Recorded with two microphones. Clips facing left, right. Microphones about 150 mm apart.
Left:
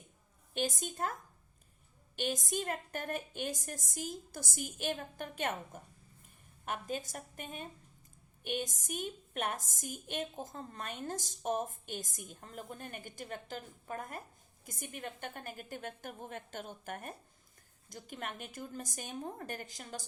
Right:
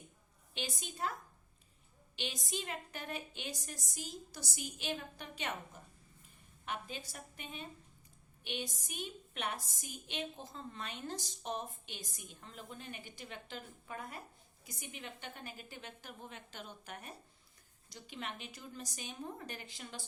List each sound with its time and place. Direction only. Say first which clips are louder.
0.5 s a woman's voice: left 8 dB; 50° left (ahead or behind)